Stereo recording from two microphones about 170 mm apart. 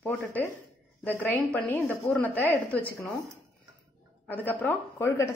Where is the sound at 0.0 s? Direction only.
10° left (ahead or behind).